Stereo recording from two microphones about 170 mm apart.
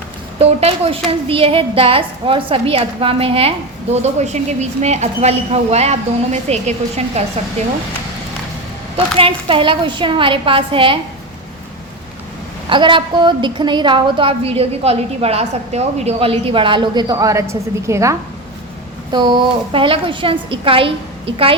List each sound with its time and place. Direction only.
0.3 s a woman's voice: 35° right (ahead or behind)
9.1 s a woman's voice: 30° right (ahead or behind)
12.6 s a woman's voice: 30° right (ahead or behind)